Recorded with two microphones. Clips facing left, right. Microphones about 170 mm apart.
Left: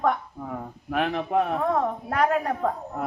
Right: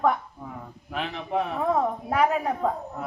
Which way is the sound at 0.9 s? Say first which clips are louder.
Left 6 dB; 55° left (ahead or behind).